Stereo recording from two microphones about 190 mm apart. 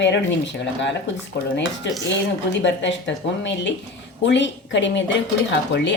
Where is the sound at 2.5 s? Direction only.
70° left (ahead or behind).